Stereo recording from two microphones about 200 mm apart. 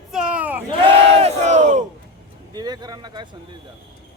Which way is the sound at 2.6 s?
20° right (ahead or behind).